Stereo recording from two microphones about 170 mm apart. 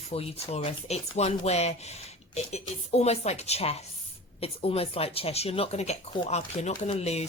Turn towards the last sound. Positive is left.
turn(degrees=40)  # may be behind; listen again after turning